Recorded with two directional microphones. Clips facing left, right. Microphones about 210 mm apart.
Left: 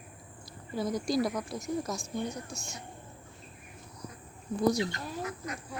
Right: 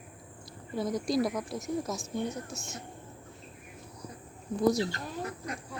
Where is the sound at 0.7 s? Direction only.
Centre (ahead or behind).